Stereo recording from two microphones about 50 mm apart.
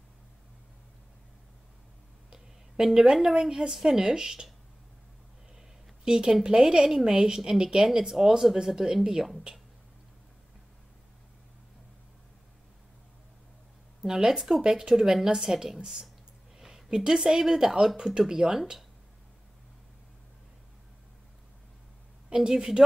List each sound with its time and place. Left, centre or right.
2.3 s speech: centre
6.0 s a woman's voice: centre
14.0 s a woman's voice: centre
22.3 s a woman's voice: centre